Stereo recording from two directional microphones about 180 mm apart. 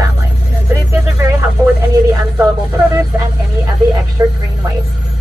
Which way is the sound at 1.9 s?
20° right (ahead or behind).